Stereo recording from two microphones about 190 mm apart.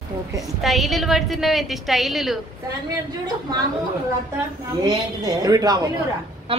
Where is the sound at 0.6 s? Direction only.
Centre (ahead or behind).